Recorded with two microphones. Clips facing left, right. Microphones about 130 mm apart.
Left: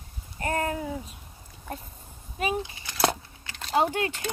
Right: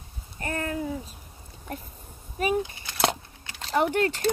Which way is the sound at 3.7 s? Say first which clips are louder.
Right 1 dB; 20° left (ahead or behind).